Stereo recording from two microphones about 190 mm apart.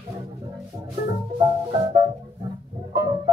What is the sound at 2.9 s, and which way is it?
Music, 20° right (ahead or behind).